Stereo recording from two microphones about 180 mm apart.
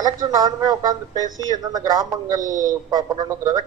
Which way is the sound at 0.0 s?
20° right (ahead or behind).